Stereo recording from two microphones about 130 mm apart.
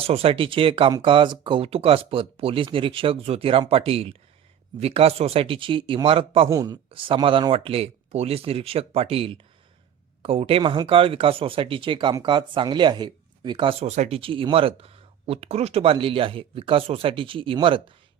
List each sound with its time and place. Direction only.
0.0 s speech: 45° right (ahead or behind)
6.5 s speech: 30° right (ahead or behind)
6.9 s speech: 40° right (ahead or behind)
13.8 s speech: 60° right (ahead or behind)
14.2 s speech: 45° right (ahead or behind)